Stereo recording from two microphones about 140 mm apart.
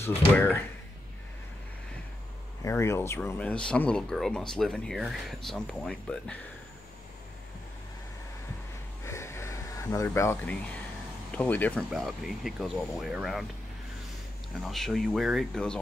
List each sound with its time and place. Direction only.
0.4 s speech: 15° left (ahead or behind)
2.6 s speech: 20° left (ahead or behind); by 6.3 s 5° left (ahead or behind)
9.0 s a sound: 20° left (ahead or behind)
11.3 s speech: 10° left (ahead or behind)
11.9 s speech: centre (ahead or behind)
14.6 s speech: centre (ahead or behind)